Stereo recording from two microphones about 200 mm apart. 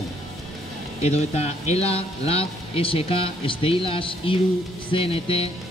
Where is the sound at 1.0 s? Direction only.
30° left (ahead or behind).